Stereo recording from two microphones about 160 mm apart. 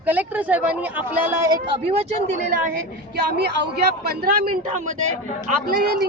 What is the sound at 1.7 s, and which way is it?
Speech, 40° right (ahead or behind).